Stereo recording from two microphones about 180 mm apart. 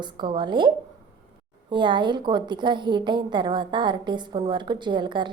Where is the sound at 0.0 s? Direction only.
25° right (ahead or behind).